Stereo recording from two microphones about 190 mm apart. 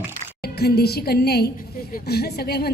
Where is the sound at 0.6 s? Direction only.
55° left (ahead or behind).